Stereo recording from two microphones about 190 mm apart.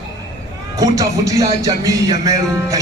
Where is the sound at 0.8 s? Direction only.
15° right (ahead or behind).